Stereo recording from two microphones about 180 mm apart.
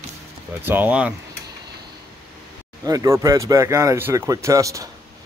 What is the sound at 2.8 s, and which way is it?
Speech, 20° right (ahead or behind).